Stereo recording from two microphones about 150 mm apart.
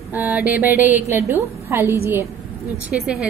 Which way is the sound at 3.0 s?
5° right (ahead or behind).